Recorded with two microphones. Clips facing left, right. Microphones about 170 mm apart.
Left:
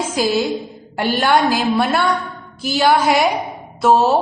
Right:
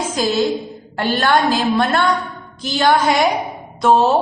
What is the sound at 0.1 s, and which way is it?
A woman's voice, 10° left (ahead or behind).